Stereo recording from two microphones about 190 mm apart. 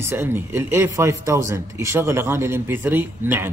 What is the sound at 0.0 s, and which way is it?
Speech, 10° right (ahead or behind).